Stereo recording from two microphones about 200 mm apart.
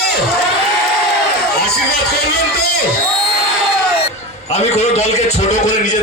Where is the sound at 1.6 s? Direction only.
50° left (ahead or behind).